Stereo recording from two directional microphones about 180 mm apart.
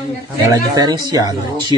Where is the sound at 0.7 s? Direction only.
20° right (ahead or behind).